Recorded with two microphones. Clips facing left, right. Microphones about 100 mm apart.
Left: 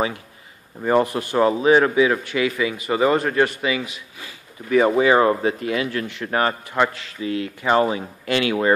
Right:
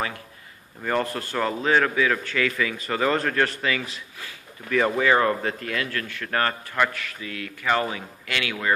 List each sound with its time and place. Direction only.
0.8 s a man's voice: 20° left (ahead or behind)